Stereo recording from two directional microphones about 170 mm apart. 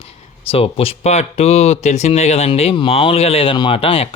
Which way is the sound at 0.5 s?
35° left (ahead or behind).